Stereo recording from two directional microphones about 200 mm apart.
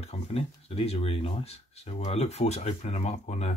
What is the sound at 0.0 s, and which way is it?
Speech, 30° left (ahead or behind).